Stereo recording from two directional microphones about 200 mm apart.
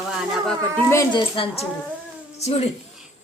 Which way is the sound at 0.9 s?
15° left (ahead or behind).